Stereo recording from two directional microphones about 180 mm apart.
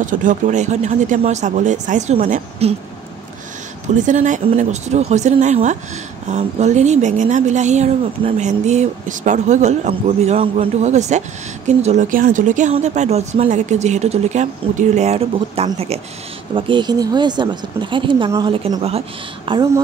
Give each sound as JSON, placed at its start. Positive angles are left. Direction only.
{"t": 0.0, "sound": "speech", "side_deg": -45}
{"t": 4.0, "sound": "speech", "side_deg": -45}